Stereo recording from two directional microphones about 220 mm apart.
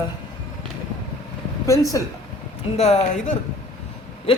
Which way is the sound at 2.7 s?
30° left (ahead or behind).